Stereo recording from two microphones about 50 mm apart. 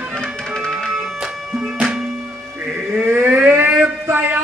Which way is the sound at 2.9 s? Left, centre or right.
Right.